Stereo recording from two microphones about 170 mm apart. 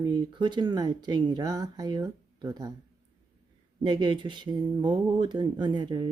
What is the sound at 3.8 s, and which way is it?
Speech, 25° right (ahead or behind).